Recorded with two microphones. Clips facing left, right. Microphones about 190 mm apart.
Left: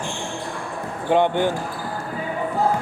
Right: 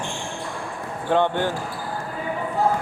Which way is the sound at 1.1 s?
15° left (ahead or behind).